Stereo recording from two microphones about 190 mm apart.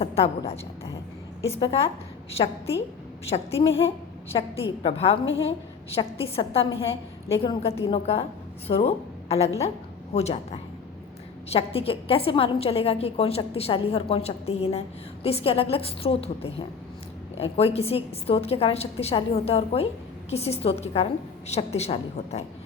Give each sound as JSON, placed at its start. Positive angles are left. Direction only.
{"t": 0.0, "sound": "a woman's voice", "side_deg": 30}
{"t": 3.2, "sound": "a woman's voice", "side_deg": 30}
{"t": 5.2, "sound": "a woman's voice", "side_deg": 90}
{"t": 5.9, "sound": "a woman's voice", "side_deg": 30}